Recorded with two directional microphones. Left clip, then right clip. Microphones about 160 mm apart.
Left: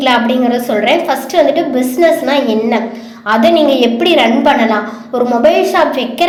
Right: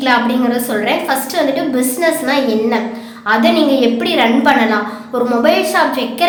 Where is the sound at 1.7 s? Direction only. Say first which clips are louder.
Left 4 dB; 15° left (ahead or behind).